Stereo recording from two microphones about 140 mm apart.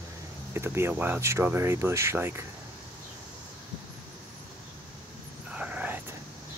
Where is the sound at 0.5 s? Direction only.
15° right (ahead or behind).